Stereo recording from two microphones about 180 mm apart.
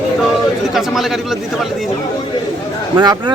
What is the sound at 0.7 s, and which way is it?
Speech, centre (ahead or behind).